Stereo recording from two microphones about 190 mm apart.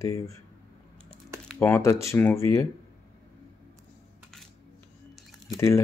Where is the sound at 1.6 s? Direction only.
15° left (ahead or behind).